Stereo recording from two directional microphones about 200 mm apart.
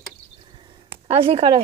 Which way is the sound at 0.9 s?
30° right (ahead or behind).